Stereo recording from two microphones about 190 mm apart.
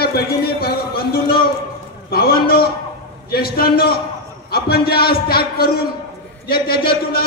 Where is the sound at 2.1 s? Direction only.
55° left (ahead or behind).